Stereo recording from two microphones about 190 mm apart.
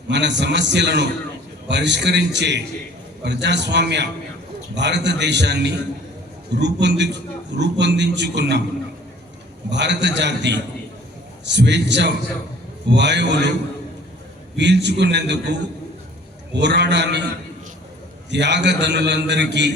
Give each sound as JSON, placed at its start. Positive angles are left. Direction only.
{"t": 0.1, "sound": "a man's voice", "side_deg": -65}
{"t": 9.6, "sound": "a man's voice", "side_deg": -65}
{"t": 14.5, "sound": "a man's voice", "side_deg": -65}
{"t": 16.6, "sound": "a man's voice", "side_deg": -65}
{"t": 18.3, "sound": "a man's voice", "side_deg": -65}